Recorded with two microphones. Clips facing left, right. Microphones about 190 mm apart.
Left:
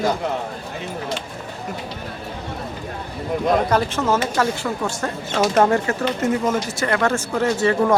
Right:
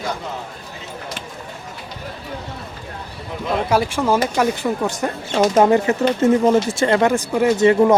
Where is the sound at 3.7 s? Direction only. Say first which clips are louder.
Right 2 dB; 10° right (ahead or behind).